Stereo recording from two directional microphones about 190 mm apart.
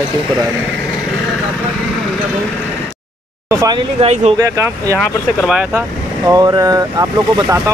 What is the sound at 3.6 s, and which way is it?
Speech, 25° right (ahead or behind).